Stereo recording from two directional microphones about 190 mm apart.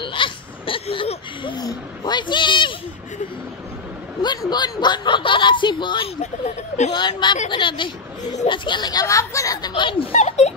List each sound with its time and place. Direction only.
0.0 s speech: 25° left (ahead or behind)
4.2 s speech: 20° left (ahead or behind)